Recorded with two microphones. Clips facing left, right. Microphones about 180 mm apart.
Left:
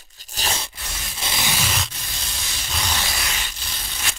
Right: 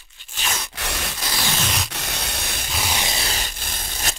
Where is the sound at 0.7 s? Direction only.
75° right (ahead or behind).